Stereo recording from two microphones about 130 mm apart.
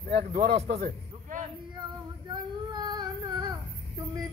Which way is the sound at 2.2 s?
35° right (ahead or behind).